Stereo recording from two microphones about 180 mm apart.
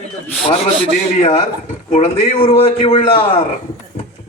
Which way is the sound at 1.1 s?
35° left (ahead or behind).